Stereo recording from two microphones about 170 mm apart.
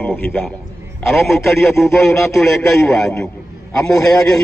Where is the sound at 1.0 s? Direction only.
Centre (ahead or behind).